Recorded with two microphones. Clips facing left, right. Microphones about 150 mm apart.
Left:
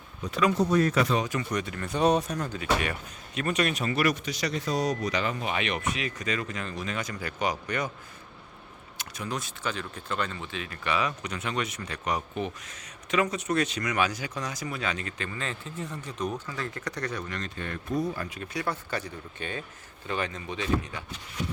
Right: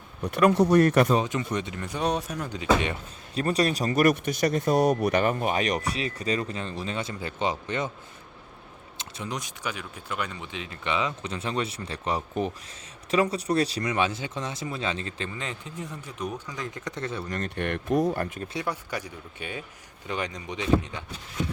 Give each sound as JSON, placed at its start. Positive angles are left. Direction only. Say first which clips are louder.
{"t": 0.2, "sound": "speech", "louder": "right 4 dB", "side_deg": -60}
{"t": 1.1, "sound": "speech", "louder": "right 3 dB", "side_deg": -25}
{"t": 2.0, "sound": "speech", "louder": "left 4 dB", "side_deg": 0}
{"t": 2.6, "sound": "speech", "louder": "right 6 dB", "side_deg": -25}
{"t": 9.0, "sound": "speech", "louder": "even", "side_deg": -25}
{"t": 17.2, "sound": "speech", "louder": "right 4 dB", "side_deg": -45}
{"t": 17.5, "sound": "speech", "louder": "right 7 dB", "side_deg": -70}
{"t": 18.3, "sound": "speech", "louder": "right 1 dB", "side_deg": -30}
{"t": 18.6, "sound": "speech", "louder": "left 2 dB", "side_deg": -10}